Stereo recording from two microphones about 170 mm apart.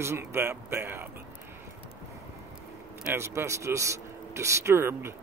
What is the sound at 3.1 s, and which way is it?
Speech, 15° right (ahead or behind).